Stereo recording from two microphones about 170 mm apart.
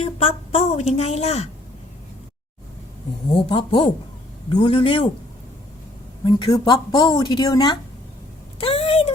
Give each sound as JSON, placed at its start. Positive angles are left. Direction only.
{"t": 0.0, "sound": "a woman's voice", "side_deg": 40}
{"t": 3.2, "sound": "a woman's voice", "side_deg": 30}
{"t": 6.2, "sound": "speech", "side_deg": 25}
{"t": 8.6, "sound": "a sound", "side_deg": 35}